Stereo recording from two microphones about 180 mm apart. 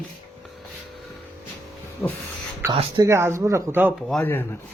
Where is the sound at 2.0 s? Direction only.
15° left (ahead or behind).